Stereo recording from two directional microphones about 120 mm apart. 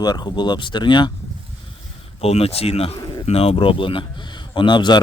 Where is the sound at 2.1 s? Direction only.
55° left (ahead or behind).